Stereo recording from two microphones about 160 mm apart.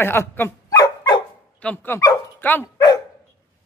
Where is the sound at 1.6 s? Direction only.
10° left (ahead or behind).